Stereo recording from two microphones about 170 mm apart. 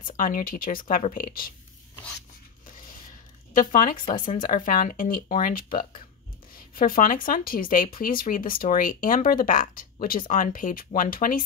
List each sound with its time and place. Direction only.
0.0 s speech: 55° left (ahead or behind)
3.5 s speech: 55° left (ahead or behind)